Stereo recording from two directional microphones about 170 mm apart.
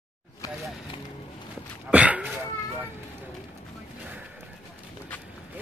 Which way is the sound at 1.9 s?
10° right (ahead or behind).